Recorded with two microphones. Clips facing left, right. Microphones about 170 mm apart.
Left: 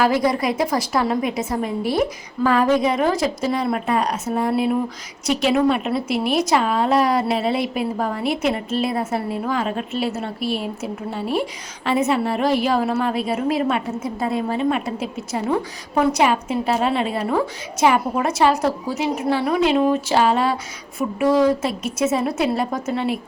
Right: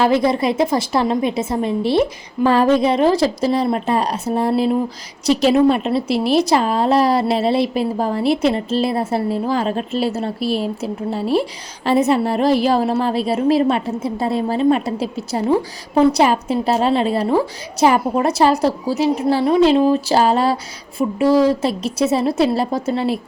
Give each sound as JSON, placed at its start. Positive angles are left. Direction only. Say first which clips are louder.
{"t": 0.0, "sound": "a woman's voice", "louder": "right 3 dB", "side_deg": -25}